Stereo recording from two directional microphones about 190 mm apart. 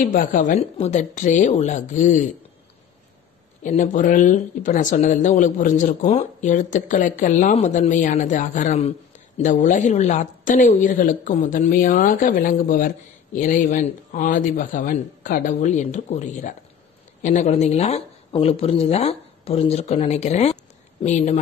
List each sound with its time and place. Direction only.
0.0 s speech: 45° left (ahead or behind)
3.6 s a woman's voice: 40° left (ahead or behind)